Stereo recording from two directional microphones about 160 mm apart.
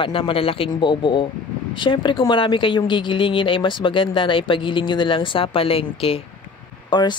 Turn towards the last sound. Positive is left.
turn(degrees=30)  # may be behind; listen again after turning